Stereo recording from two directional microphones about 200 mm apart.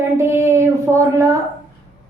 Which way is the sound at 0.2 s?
15° right (ahead or behind).